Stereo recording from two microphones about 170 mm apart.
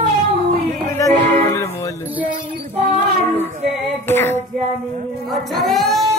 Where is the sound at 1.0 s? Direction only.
20° left (ahead or behind).